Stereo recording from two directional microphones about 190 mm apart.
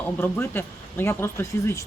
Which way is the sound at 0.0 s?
10° left (ahead or behind).